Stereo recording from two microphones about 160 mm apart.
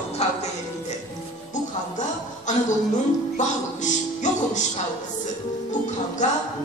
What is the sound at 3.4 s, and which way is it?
Music, 50° left (ahead or behind).